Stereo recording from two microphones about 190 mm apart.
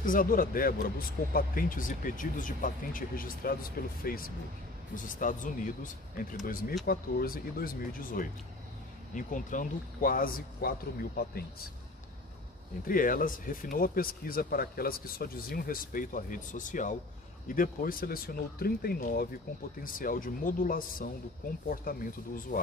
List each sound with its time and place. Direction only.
0.0 s speech: 45° left (ahead or behind)
12.8 s speech: 45° left (ahead or behind)